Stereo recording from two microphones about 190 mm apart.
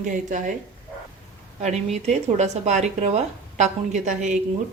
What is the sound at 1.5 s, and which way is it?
A woman's voice, 35° right (ahead or behind).